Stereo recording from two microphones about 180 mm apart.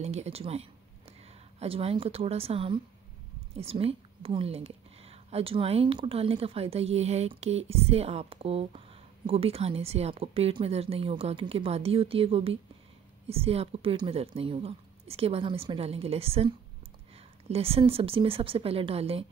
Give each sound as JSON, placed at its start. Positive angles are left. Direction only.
{"t": 0.0, "sound": "a woman's voice", "side_deg": -35}